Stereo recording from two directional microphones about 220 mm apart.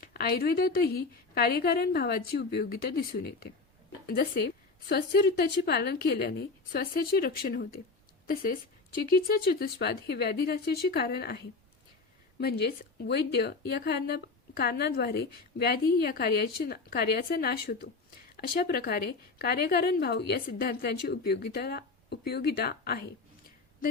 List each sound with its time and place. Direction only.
0.0 s speech: 45° left (ahead or behind)